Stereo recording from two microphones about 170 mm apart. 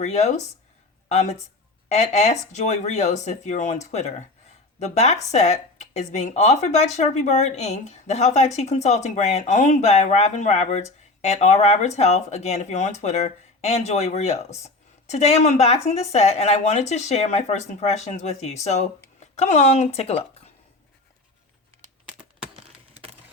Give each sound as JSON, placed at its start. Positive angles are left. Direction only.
{"t": 0.0, "sound": "speech", "side_deg": 40}